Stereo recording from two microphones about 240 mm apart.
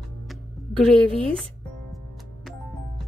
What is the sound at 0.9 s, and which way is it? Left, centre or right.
Speech, right.